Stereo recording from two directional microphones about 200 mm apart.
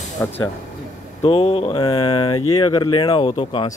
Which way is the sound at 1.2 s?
30° left (ahead or behind).